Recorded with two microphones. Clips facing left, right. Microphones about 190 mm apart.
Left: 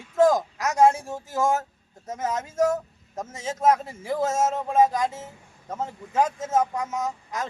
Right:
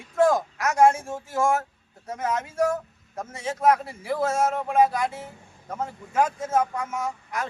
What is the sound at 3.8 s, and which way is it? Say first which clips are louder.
Speech: left 1 dB; 45° left (ahead or behind).